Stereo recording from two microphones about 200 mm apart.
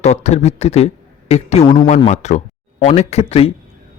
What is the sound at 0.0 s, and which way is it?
A man's voice, 35° left (ahead or behind).